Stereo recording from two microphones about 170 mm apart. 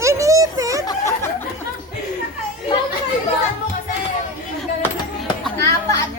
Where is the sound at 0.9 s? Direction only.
20° left (ahead or behind).